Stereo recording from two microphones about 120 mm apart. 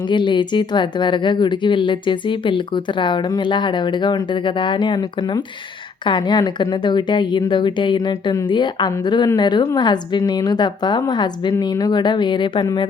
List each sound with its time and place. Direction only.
0.1 s a woman's voice: 40° left (ahead or behind)